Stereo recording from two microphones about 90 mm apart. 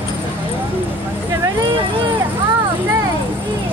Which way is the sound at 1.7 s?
70° right (ahead or behind).